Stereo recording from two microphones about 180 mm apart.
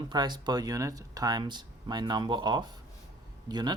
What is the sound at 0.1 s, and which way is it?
Speech, 25° right (ahead or behind).